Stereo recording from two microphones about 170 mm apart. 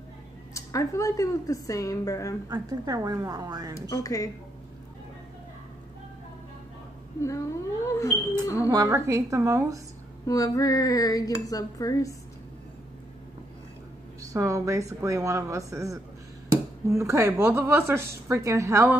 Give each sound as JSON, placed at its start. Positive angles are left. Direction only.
{"t": 0.6, "sound": "speech", "side_deg": 20}
{"t": 2.5, "sound": "speech", "side_deg": -20}
{"t": 3.9, "sound": "speech", "side_deg": 20}
{"t": 7.2, "sound": "a sound", "side_deg": 15}
{"t": 8.6, "sound": "a woman's voice", "side_deg": -15}
{"t": 10.2, "sound": "speech", "side_deg": 20}
{"t": 14.2, "sound": "a woman's voice", "side_deg": -20}